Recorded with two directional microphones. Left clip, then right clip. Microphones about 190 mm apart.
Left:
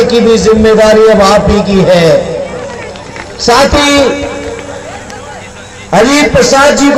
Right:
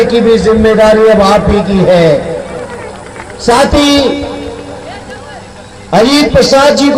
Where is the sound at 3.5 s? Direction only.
20° left (ahead or behind).